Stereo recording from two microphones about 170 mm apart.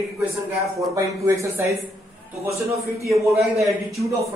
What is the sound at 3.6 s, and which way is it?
Speech, centre (ahead or behind).